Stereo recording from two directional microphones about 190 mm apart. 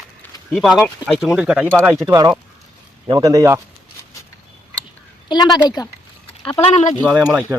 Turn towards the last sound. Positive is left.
turn(degrees=-5)  # may be behind; listen again after turning